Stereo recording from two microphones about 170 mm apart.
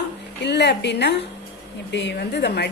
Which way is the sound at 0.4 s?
85° left.